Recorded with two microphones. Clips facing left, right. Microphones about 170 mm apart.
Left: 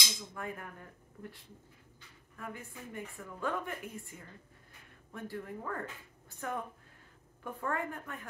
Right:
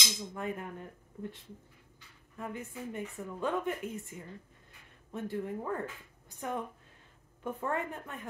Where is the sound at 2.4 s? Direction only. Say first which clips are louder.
Right 5 dB; 20° right (ahead or behind).